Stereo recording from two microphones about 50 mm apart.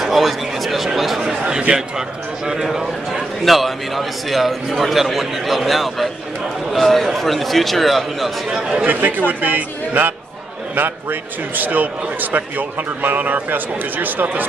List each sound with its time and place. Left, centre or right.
0.0 s a sound: centre
1.7 s a man's voice: centre
8.5 s a man's voice: centre
8.8 s a man's voice: right